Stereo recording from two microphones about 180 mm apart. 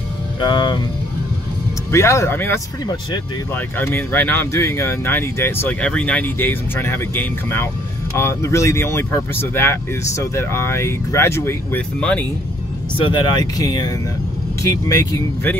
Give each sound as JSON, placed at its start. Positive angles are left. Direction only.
{"t": 0.4, "sound": "speech", "side_deg": 25}
{"t": 1.9, "sound": "speech", "side_deg": 15}
{"t": 12.9, "sound": "speech", "side_deg": 25}